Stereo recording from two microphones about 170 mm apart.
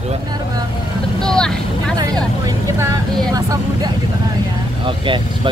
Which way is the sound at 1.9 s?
25° right (ahead or behind).